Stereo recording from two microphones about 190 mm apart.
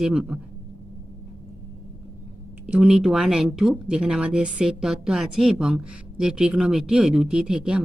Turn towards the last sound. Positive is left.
turn(degrees=-5)  # may be behind; listen again after turning